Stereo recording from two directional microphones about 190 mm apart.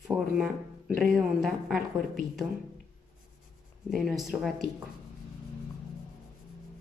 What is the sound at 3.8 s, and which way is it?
Speech, centre (ahead or behind).